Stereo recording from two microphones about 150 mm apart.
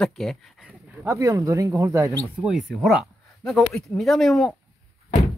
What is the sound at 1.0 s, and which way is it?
Speech, 20° right (ahead or behind).